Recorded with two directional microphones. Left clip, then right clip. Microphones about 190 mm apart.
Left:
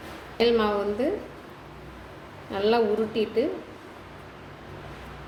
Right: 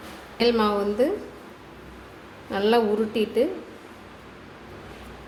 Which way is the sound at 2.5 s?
35° right (ahead or behind).